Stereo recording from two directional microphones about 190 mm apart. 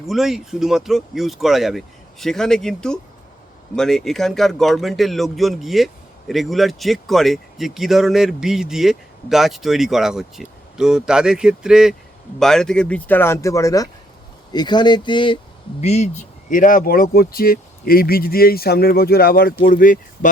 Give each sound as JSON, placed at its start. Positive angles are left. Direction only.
{"t": 0.1, "sound": "speech", "side_deg": 0}
{"t": 16.5, "sound": "speech", "side_deg": 45}